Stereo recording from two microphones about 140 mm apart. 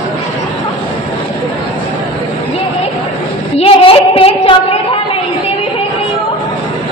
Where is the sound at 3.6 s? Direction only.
45° left (ahead or behind).